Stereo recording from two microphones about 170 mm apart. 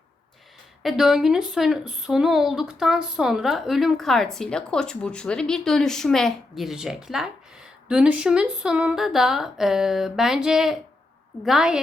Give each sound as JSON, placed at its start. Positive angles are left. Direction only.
{"t": 0.8, "sound": "speech", "side_deg": 0}